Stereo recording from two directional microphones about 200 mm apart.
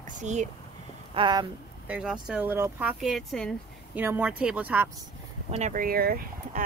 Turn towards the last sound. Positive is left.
turn(degrees=-50)  # may be behind; listen again after turning